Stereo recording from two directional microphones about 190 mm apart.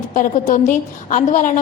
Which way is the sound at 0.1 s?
45° left (ahead or behind).